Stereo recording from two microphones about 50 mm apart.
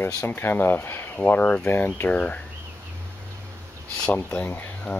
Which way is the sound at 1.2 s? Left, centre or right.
Left.